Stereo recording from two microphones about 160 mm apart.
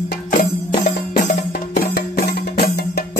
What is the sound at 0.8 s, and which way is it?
Music, 55° left (ahead or behind).